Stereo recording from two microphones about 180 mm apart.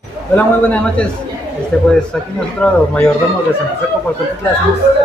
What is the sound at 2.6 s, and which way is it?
Speech, 5° left (ahead or behind).